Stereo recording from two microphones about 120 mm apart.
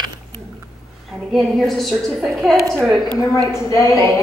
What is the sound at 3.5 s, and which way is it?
Speech, 25° left (ahead or behind).